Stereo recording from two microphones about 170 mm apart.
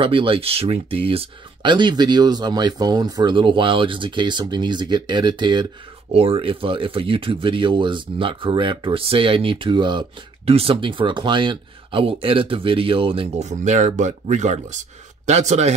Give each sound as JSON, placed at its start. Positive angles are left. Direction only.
{"t": 0.0, "sound": "speech", "side_deg": -30}